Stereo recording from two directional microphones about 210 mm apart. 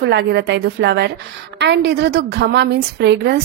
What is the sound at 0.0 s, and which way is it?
A woman's voice, 55° right (ahead or behind).